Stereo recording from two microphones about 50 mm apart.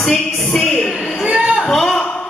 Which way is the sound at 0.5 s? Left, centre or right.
Centre.